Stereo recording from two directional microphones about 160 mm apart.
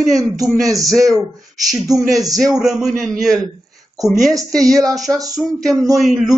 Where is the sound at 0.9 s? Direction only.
Centre (ahead or behind).